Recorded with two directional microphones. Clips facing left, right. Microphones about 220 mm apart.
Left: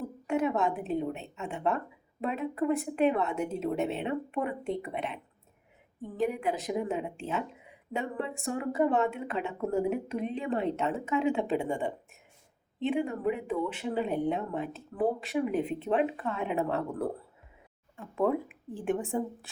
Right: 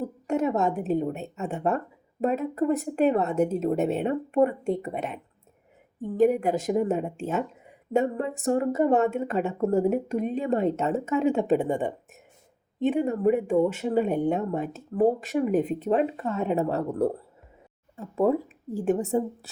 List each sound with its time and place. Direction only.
0.0 s a woman's voice: 45° right (ahead or behind)